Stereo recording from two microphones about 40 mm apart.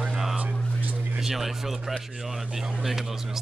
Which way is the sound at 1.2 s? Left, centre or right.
Centre.